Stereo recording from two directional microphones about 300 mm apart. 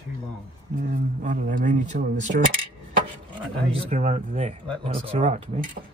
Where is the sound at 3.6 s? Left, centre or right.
Centre.